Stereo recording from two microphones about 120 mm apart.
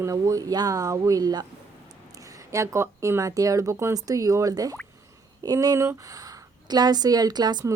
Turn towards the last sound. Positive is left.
turn(degrees=-30)  # may be behind; listen again after turning